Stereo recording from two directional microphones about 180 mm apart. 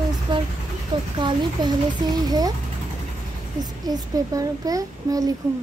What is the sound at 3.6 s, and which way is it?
A child's voice, 20° right (ahead or behind).